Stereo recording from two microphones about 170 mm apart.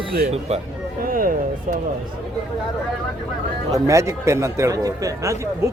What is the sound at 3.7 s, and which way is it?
A man's voice, 20° right (ahead or behind).